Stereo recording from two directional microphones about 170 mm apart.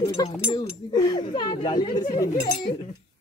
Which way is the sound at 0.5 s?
25° left (ahead or behind).